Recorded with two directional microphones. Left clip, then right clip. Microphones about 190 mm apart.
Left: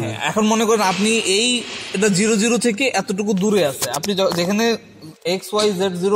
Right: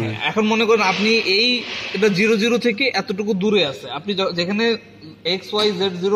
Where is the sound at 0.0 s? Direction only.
55° left (ahead or behind).